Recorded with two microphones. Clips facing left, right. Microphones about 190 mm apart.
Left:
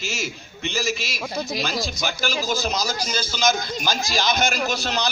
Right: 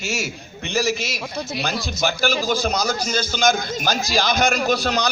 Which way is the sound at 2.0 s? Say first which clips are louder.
Right 5 dB; 50° right (ahead or behind).